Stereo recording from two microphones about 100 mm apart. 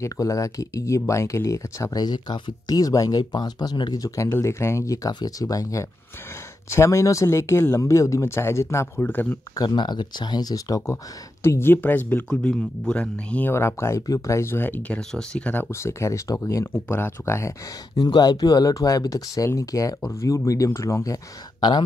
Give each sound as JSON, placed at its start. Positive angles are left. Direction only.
{"t": 0.0, "sound": "speech", "side_deg": 35}
{"t": 9.0, "sound": "speech", "side_deg": 15}
{"t": 9.6, "sound": "speech", "side_deg": 45}
{"t": 11.4, "sound": "speech", "side_deg": 25}
{"t": 12.3, "sound": "speech", "side_deg": 10}
{"t": 13.5, "sound": "speech", "side_deg": 25}
{"t": 15.7, "sound": "speech", "side_deg": 30}
{"t": 16.7, "sound": "speech", "side_deg": 20}
{"t": 17.9, "sound": "speech", "side_deg": 45}